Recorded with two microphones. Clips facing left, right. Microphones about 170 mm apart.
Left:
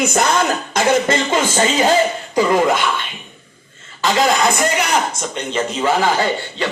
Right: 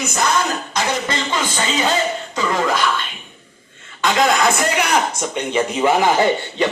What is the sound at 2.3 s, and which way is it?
Speech, 25° left (ahead or behind).